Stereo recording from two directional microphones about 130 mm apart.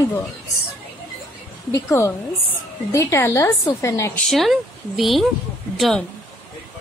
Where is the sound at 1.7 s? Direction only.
25° left (ahead or behind).